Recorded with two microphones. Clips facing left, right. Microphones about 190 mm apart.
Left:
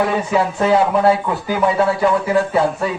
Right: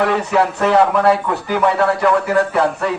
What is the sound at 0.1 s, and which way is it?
A man's voice, 70° right (ahead or behind).